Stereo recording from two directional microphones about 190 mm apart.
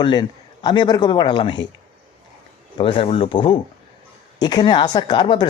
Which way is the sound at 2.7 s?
25° left (ahead or behind).